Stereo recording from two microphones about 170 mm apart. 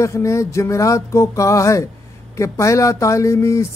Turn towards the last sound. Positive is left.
turn(degrees=15)  # may be behind; listen again after turning